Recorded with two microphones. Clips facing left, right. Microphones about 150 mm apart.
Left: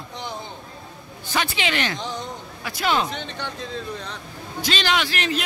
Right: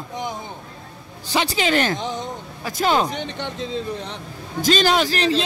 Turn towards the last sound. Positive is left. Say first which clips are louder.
# right 5 dB
turn(degrees=-35)  # may be behind; listen again after turning